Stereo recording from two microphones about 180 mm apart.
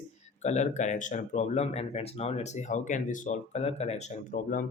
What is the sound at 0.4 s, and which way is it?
Speech, 40° left (ahead or behind).